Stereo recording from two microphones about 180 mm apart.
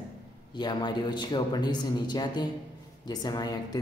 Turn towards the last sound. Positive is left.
turn(degrees=20)  # may be behind; listen again after turning